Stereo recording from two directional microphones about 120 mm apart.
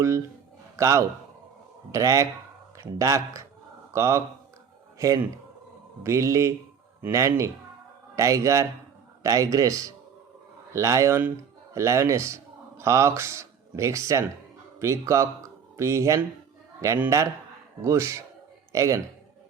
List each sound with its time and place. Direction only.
0.8 s a man's voice: 25° right (ahead or behind)